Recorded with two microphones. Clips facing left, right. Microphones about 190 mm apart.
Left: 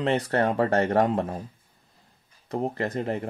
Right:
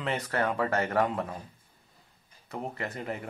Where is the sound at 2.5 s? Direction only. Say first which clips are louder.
Left 8 dB; 35° left (ahead or behind).